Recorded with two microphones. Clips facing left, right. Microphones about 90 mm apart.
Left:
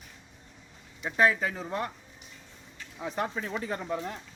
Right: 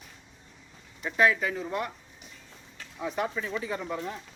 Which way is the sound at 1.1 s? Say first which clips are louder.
Right 1 dB; 30° left (ahead or behind).